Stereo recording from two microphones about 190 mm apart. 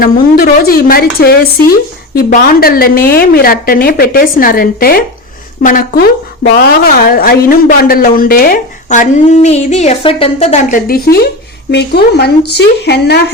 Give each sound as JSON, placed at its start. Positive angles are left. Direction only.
{"t": 0.0, "sound": "speech", "side_deg": 50}
{"t": 10.8, "sound": "a woman's voice", "side_deg": 50}